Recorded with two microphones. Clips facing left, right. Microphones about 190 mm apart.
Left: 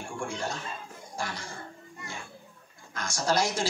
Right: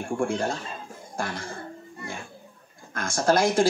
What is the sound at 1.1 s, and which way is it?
Cough, 55° right (ahead or behind).